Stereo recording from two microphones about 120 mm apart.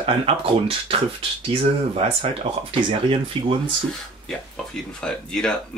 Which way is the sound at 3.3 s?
45° right (ahead or behind).